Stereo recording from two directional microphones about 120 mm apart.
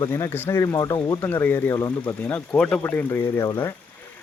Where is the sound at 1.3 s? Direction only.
15° left (ahead or behind).